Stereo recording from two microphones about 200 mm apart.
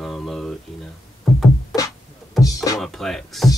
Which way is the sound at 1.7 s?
Centre (ahead or behind).